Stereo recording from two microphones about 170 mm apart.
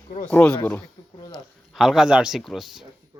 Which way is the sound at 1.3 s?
Centre (ahead or behind).